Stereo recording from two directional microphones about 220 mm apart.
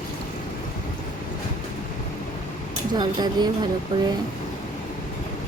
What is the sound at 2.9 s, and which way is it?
Speech, 20° right (ahead or behind).